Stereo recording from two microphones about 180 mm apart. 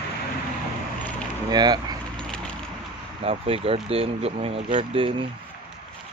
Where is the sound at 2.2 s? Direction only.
5° left (ahead or behind).